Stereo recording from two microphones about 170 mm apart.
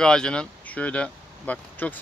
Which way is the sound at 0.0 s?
5° left (ahead or behind).